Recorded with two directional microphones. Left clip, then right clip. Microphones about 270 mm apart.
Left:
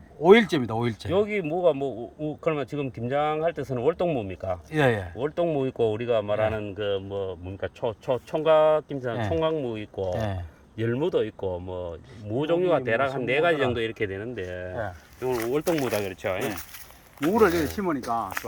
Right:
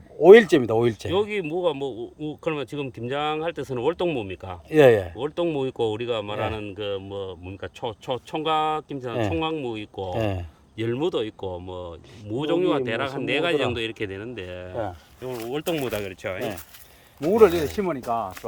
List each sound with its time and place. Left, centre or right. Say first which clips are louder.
0.2 s speech: right 6 dB; right
1.1 s speech: even; centre
4.7 s speech: right 9 dB; right
5.2 s speech: even; centre
10.2 s speech: right 4 dB; right
10.8 s speech: even; centre
17.7 s speech: right 2 dB; right